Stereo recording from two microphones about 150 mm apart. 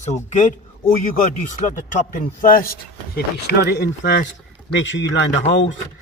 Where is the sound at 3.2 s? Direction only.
90° left.